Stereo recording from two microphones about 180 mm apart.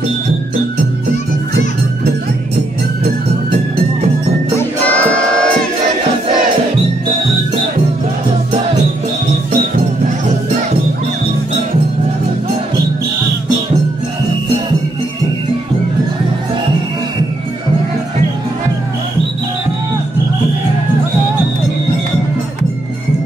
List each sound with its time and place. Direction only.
4.6 s music: 10° left (ahead or behind)